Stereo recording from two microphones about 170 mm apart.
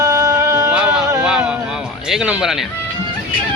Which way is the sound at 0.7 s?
5° right (ahead or behind).